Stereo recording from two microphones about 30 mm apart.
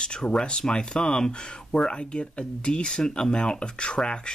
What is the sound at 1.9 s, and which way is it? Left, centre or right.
Speech, left.